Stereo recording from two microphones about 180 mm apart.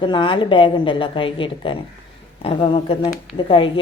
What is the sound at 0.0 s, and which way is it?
A woman's voice, 25° left (ahead or behind).